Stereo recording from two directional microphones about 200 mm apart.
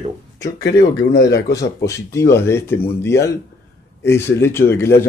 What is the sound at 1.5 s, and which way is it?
Speech, 15° left (ahead or behind).